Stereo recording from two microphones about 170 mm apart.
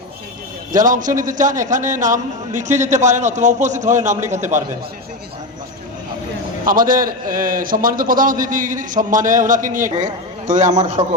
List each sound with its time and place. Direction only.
0.7 s a man's voice: 50° right (ahead or behind)
6.7 s a man's voice: 55° right (ahead or behind)